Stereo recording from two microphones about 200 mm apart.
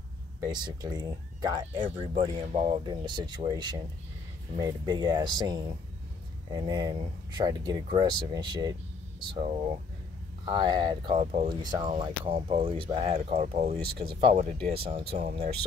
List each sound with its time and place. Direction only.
0.4 s speech: 20° right (ahead or behind)